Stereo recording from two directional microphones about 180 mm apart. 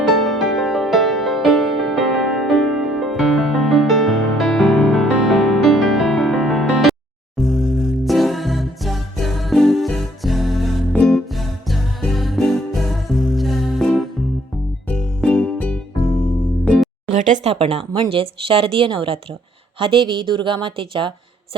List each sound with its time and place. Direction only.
0.0 s music: centre (ahead or behind)
17.1 s a woman's voice: 45° right (ahead or behind)